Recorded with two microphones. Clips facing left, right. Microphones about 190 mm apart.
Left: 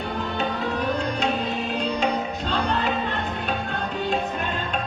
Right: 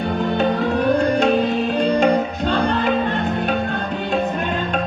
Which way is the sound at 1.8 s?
50° right (ahead or behind).